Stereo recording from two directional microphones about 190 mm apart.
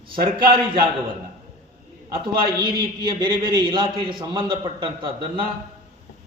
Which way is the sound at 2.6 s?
25° right (ahead or behind).